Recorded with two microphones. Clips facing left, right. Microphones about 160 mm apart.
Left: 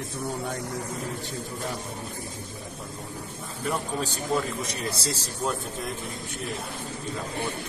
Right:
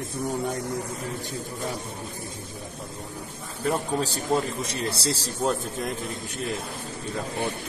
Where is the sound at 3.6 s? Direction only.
30° right (ahead or behind).